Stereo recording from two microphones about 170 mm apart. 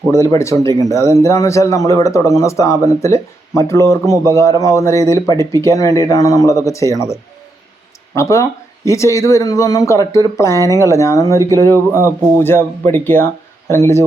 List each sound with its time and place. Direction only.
0.1 s speech: 15° left (ahead or behind)
5.3 s speech: 25° right (ahead or behind)
5.5 s speech: 20° left (ahead or behind)